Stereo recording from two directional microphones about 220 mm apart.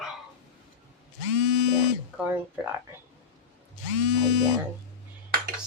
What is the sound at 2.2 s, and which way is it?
Speech, 10° right (ahead or behind).